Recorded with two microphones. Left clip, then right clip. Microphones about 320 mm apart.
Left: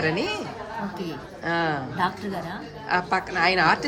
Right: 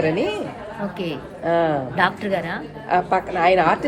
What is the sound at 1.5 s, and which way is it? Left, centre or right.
Speech, centre.